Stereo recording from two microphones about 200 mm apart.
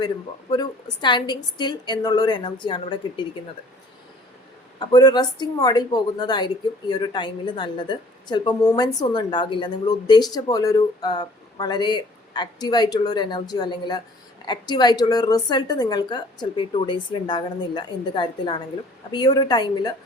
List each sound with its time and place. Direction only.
1.0 s a woman's voice: 20° left (ahead or behind)
4.8 s a woman's voice: 20° left (ahead or behind)